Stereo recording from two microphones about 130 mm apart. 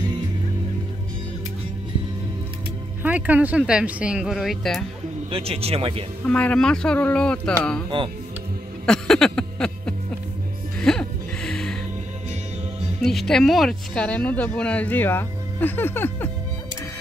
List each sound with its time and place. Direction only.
3.0 s speech: 10° right (ahead or behind)
5.3 s speech: 50° right (ahead or behind)
6.2 s speech: 10° left (ahead or behind)
7.9 s speech: 40° right (ahead or behind)
8.8 s music: 5° left (ahead or behind)
13.0 s speech: centre (ahead or behind)